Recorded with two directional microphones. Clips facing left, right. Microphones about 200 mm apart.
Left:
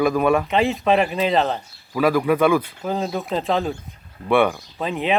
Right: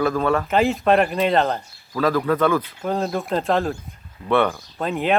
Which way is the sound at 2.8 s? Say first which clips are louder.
Right 1 dB; centre (ahead or behind).